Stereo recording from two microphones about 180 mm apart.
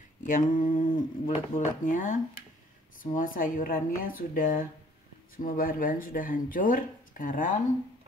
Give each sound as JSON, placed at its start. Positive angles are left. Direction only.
{"t": 0.2, "sound": "speech", "side_deg": 45}